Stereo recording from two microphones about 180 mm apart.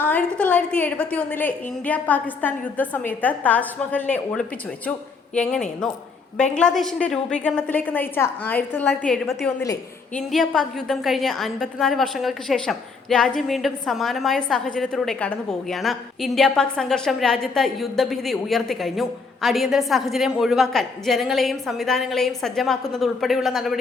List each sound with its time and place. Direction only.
0.0 s a woman's voice: 10° left (ahead or behind)